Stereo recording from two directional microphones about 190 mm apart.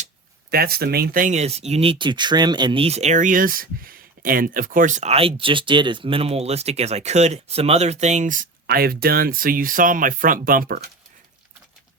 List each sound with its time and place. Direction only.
0.5 s speech: 55° right (ahead or behind)